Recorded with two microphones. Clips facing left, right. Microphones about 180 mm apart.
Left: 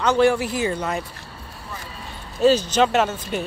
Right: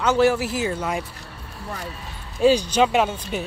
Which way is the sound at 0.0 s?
5° right (ahead or behind).